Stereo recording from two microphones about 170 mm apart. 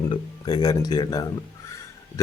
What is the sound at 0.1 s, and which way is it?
Speech, 25° left (ahead or behind).